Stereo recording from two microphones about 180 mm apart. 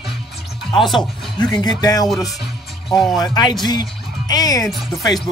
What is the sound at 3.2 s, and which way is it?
Speech, 25° left (ahead or behind).